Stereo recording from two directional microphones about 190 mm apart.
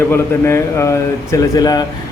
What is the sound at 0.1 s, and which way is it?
Speech, 15° left (ahead or behind).